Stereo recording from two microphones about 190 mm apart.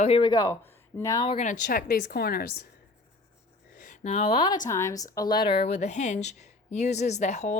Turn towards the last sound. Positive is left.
turn(degrees=35)  # may be behind; listen again after turning